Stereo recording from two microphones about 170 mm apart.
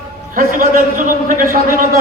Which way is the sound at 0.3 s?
55° right (ahead or behind).